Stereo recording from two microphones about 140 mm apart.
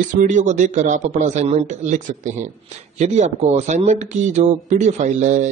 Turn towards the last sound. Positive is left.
turn(degrees=-60)  # may be behind; listen again after turning